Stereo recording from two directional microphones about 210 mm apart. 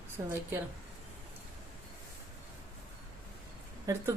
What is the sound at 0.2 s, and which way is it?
Speech, 15° right (ahead or behind).